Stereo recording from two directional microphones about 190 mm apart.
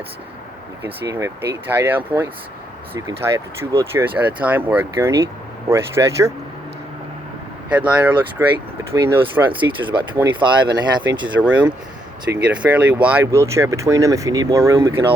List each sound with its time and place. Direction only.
1.0 s speech: 15° right (ahead or behind)
3.1 s speech: 15° right (ahead or behind)
7.7 s speech: 5° right (ahead or behind)
9.5 s speech: 25° right (ahead or behind)
11.3 s speech: 5° right (ahead or behind)